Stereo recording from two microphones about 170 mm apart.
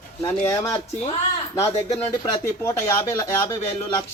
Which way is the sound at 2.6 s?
15° left (ahead or behind).